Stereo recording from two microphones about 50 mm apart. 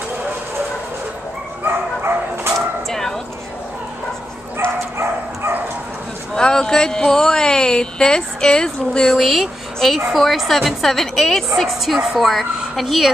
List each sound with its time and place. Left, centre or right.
1.6 s dog: right
2.5 s a sound: centre
4.6 s dog: right
6.3 s speech: centre
9.2 s a woman's voice: centre